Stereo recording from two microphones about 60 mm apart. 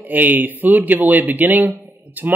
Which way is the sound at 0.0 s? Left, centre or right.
Right.